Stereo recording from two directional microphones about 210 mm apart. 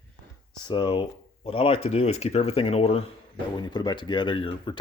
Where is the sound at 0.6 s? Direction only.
20° left (ahead or behind).